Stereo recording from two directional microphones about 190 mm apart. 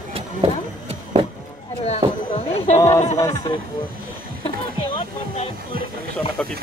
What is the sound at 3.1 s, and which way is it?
Music, 20° left (ahead or behind).